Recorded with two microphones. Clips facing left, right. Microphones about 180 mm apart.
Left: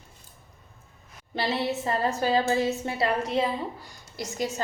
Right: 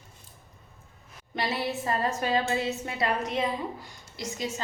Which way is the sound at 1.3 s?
25° left (ahead or behind).